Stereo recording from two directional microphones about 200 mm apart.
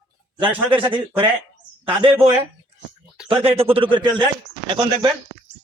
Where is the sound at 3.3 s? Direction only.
25° right (ahead or behind).